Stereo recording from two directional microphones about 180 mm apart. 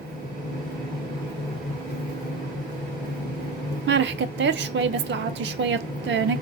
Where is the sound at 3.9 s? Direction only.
80° right.